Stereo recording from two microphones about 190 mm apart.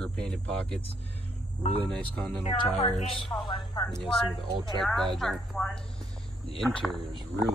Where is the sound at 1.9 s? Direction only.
5° left (ahead or behind).